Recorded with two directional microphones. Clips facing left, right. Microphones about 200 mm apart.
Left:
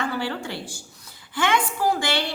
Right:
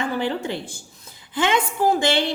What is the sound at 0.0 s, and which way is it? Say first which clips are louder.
A woman's voice: right 3 dB; 20° right (ahead or behind).